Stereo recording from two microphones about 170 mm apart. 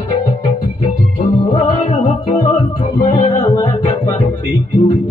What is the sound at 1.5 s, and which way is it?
Music, 30° left (ahead or behind).